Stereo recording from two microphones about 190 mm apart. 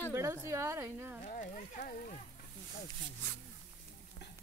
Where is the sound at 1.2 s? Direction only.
40° left (ahead or behind).